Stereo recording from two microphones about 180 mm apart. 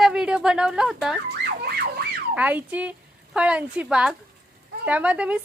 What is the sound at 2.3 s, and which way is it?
Speech, 10° right (ahead or behind).